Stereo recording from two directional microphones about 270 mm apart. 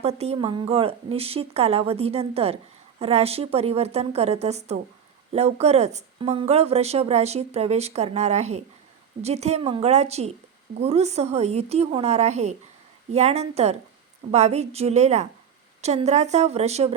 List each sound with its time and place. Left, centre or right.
0.0 s speech: right